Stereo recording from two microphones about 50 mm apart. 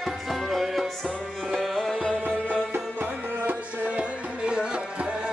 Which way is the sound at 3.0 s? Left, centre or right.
Right.